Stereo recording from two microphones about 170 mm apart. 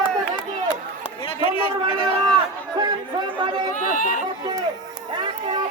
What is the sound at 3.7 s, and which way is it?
Speech, 50° left (ahead or behind).